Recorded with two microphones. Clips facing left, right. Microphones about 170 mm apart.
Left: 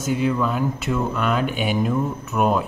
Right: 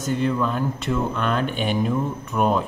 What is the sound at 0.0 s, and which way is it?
Speech, 5° left (ahead or behind).